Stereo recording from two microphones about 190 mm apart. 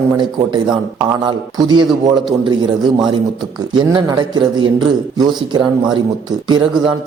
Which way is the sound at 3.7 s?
20° right (ahead or behind).